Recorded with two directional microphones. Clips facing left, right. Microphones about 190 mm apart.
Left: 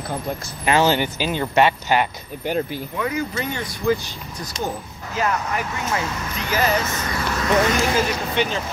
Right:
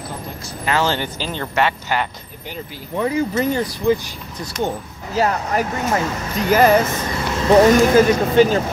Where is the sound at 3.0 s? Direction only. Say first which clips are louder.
Right 7 dB; 35° right (ahead or behind).